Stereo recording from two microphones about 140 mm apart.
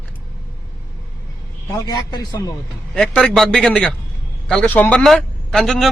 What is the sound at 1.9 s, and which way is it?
Speech, 30° left (ahead or behind).